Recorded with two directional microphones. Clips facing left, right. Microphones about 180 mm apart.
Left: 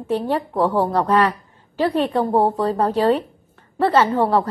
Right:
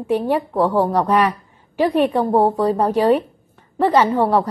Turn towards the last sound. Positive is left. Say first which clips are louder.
# right 1 dB
turn(degrees=-15)  # may be behind; listen again after turning